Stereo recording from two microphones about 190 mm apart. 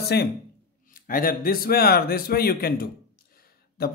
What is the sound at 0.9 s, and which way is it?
Speech, 50° left (ahead or behind).